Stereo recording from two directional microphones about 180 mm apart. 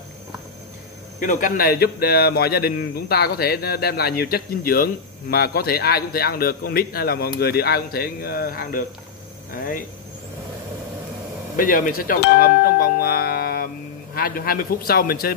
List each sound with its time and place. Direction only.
1.2 s speech: 45° left (ahead or behind)
11.5 s speech: 50° left (ahead or behind)